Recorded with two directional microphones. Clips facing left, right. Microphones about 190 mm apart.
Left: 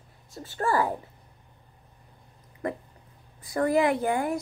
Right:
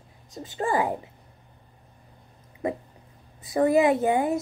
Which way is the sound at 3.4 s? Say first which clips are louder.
Right 3 dB; 20° right (ahead or behind).